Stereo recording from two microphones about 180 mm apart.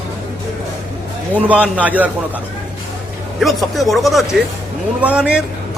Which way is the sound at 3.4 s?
Centre (ahead or behind).